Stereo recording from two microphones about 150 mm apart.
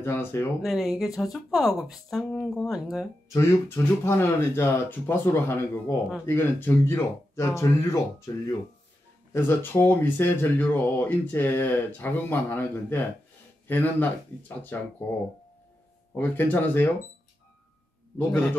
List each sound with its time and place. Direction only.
0.0 s speech: 15° left (ahead or behind)
0.6 s speech: centre (ahead or behind)
3.3 s speech: 15° left (ahead or behind)
9.3 s speech: 15° left (ahead or behind)
16.2 s speech: 15° left (ahead or behind)
18.1 s speech: 10° left (ahead or behind)